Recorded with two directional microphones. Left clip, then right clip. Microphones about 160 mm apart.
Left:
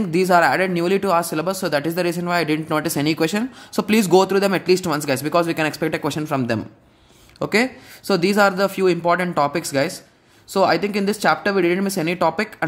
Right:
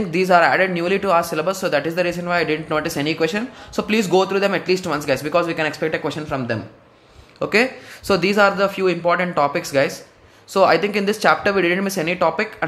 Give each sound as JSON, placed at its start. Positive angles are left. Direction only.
{"t": 0.1, "sound": "speech", "side_deg": 35}
{"t": 7.3, "sound": "speech", "side_deg": 35}